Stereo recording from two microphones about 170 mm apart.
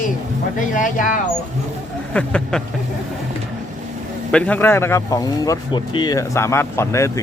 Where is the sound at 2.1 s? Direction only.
5° left (ahead or behind).